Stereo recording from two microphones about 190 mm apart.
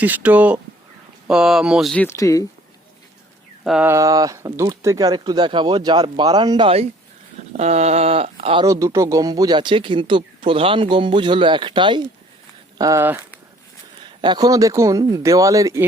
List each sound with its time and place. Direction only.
0.0 s speech: 10° right (ahead or behind)
2.0 s speech: 15° left (ahead or behind)
3.6 s speech: 5° right (ahead or behind); by 8.6 s 30° right (ahead or behind)
8.6 s speech: 15° right (ahead or behind)
12.8 s speech: 15° right (ahead or behind)
14.2 s speech: 20° right (ahead or behind)